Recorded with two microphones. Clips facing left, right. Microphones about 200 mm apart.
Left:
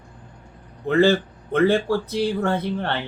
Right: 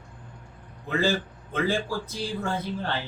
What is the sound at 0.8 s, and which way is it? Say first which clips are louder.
Speech: left 8 dB; 65° left (ahead or behind).